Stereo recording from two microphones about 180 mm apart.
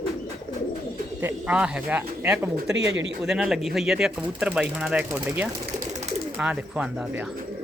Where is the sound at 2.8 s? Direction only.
80° right.